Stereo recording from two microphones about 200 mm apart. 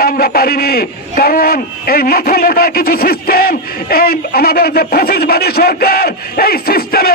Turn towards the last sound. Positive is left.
turn(degrees=50)  # may be behind; listen again after turning